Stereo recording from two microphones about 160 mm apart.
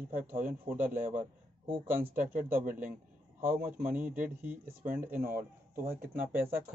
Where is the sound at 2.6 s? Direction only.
55° right (ahead or behind).